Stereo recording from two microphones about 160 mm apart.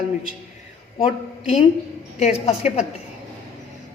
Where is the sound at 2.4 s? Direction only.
40° left (ahead or behind).